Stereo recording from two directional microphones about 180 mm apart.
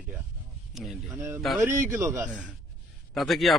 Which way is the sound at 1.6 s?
15° right (ahead or behind).